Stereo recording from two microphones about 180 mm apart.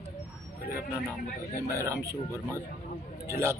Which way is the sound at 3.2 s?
15° right (ahead or behind).